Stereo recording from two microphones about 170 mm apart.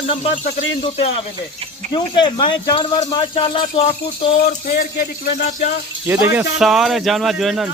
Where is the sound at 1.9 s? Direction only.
25° left (ahead or behind).